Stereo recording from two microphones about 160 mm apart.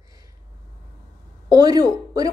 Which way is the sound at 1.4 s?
25° right (ahead or behind).